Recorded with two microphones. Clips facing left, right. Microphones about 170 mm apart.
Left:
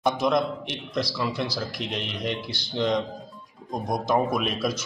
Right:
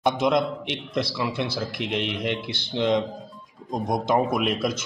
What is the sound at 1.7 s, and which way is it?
Speech, 65° right (ahead or behind).